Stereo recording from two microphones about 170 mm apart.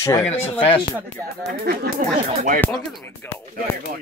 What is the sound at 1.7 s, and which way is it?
Speech, 60° right (ahead or behind).